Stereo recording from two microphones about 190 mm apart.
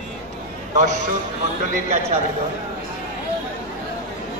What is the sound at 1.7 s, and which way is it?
Speech, 40° right (ahead or behind).